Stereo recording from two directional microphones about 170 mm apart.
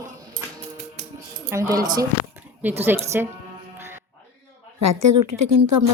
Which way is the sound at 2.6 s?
10° right (ahead or behind).